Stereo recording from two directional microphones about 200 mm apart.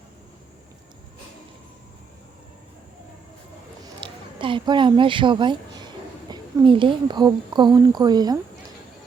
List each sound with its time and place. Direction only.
4.0 s speech: 25° right (ahead or behind)